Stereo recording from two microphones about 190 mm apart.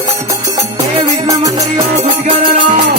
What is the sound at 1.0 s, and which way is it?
Music, 20° right (ahead or behind).